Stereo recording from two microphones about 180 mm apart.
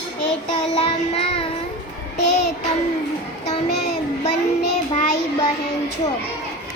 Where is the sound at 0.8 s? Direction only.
30° left (ahead or behind).